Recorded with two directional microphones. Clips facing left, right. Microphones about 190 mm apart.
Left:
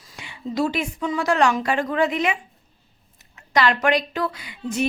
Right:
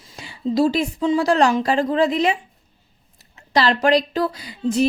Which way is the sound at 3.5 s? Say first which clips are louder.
Right 3 dB; 30° right (ahead or behind).